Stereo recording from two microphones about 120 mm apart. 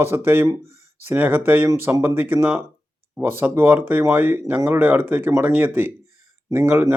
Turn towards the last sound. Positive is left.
turn(degrees=-20)  # may be behind; listen again after turning